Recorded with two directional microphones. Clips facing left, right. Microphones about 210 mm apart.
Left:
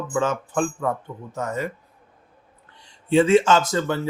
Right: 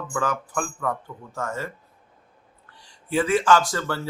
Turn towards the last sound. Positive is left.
turn(degrees=20)  # may be behind; listen again after turning